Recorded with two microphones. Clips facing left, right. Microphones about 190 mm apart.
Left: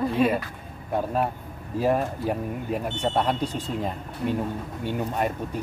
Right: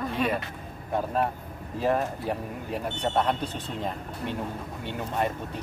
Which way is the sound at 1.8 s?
5° left (ahead or behind).